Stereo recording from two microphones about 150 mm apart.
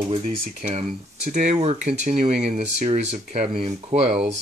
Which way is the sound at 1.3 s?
55° right (ahead or behind).